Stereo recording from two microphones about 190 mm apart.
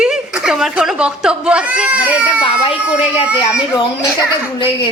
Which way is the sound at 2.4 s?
30° left (ahead or behind).